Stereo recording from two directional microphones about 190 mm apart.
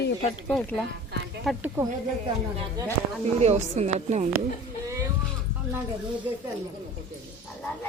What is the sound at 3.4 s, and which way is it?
Speech, 35° right (ahead or behind).